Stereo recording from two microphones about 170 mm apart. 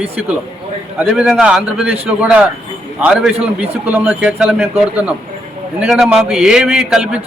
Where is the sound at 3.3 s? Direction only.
35° right (ahead or behind).